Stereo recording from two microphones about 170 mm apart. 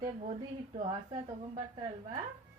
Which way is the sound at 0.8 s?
40° right (ahead or behind).